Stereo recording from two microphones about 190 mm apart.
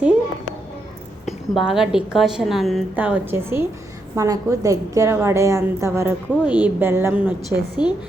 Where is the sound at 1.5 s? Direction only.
5° right (ahead or behind).